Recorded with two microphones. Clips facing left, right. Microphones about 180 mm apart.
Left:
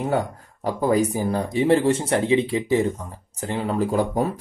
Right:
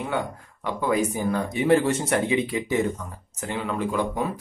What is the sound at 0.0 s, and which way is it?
Speech, 40° left (ahead or behind).